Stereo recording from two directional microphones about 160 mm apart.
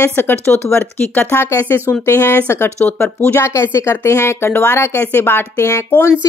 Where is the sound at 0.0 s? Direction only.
15° left (ahead or behind).